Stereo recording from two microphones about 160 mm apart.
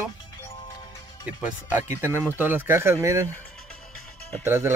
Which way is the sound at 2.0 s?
15° right (ahead or behind).